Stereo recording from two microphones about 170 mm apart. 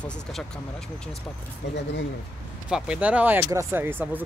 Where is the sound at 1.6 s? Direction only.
90° left.